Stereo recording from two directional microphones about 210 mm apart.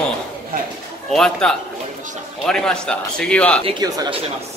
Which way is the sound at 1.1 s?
Centre (ahead or behind).